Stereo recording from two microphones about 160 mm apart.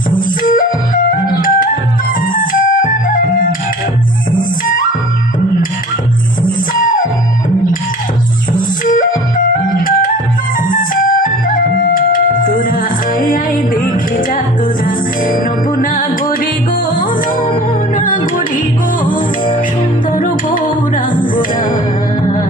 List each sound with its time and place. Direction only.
0.4 s music: 60° left (ahead or behind)
6.4 s music: 60° left (ahead or behind)
8.5 s music: 55° left (ahead or behind)
14.9 s music: 60° left (ahead or behind)
17.9 s music: 55° left (ahead or behind)
20.1 s music: 55° left (ahead or behind)